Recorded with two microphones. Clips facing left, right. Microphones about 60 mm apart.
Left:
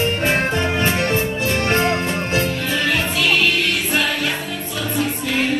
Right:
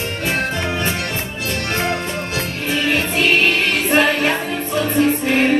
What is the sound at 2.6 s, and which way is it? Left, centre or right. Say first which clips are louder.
Music: right 1 dB; right.